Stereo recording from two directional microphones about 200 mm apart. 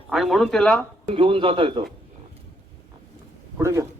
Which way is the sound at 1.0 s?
25° right (ahead or behind).